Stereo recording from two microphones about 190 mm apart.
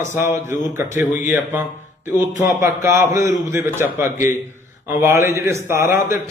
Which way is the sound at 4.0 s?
15° right (ahead or behind).